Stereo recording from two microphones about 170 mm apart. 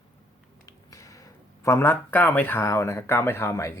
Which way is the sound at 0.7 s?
20° left (ahead or behind).